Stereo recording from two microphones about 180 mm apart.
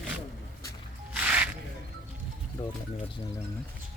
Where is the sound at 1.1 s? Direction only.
10° right (ahead or behind).